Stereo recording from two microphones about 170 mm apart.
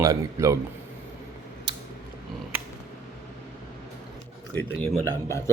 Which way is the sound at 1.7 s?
25° right (ahead or behind).